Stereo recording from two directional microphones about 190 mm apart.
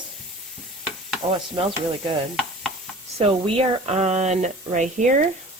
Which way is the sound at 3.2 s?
30° right (ahead or behind).